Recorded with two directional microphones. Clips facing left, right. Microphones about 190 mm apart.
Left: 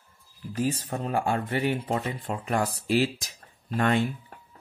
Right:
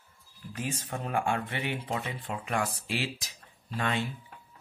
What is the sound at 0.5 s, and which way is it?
Speech, 35° left (ahead or behind).